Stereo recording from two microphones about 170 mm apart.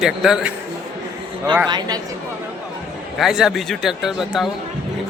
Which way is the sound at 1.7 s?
25° right (ahead or behind).